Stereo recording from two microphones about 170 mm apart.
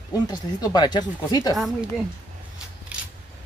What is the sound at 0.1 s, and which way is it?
Speech, 25° left (ahead or behind).